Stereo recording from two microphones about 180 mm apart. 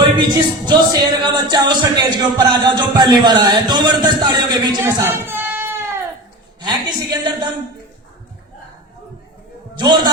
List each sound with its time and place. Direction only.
0.6 s speech: 25° right (ahead or behind)
4.8 s a sound: 15° right (ahead or behind)
6.6 s speech: 25° right (ahead or behind)
9.7 s speech: 25° right (ahead or behind)